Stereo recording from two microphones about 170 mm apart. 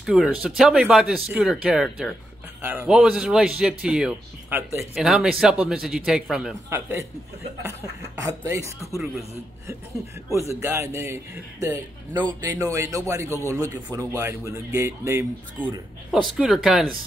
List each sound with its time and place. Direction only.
0.0 s a man's voice: centre (ahead or behind)
6.7 s a man's voice: 15° right (ahead or behind)
8.2 s a man's voice: 15° right (ahead or behind)
10.6 s a man's voice: 15° right (ahead or behind)
16.1 s a man's voice: centre (ahead or behind)